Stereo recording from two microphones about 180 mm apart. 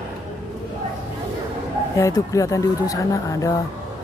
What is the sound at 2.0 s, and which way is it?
Speech, 20° left (ahead or behind).